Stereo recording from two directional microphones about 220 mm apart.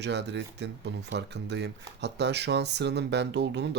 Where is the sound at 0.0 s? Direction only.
50° right (ahead or behind).